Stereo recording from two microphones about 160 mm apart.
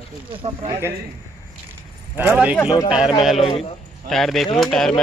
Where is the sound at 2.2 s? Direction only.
10° right (ahead or behind).